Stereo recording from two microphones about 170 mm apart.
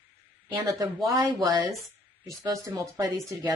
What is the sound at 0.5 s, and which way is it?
Speech, 15° right (ahead or behind).